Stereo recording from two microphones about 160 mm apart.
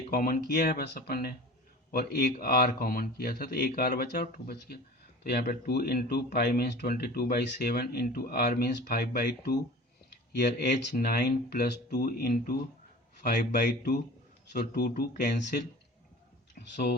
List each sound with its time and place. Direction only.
0.1 s speech: 65° left (ahead or behind); by 10.7 s 85° left
10.7 s speech: 65° left (ahead or behind)
13.2 s speech: 55° left (ahead or behind)
14.5 s speech: 70° left (ahead or behind)
16.6 s speech: 90° left